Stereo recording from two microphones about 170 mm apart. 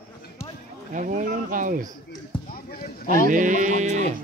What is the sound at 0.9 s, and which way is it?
Speech, 50° right (ahead or behind).